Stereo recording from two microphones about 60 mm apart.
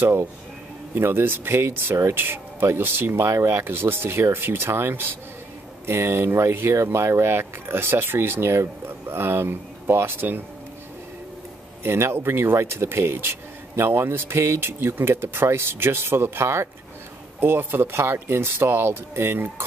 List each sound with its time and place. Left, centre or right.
0.0 s speech: right
11.8 s speech: right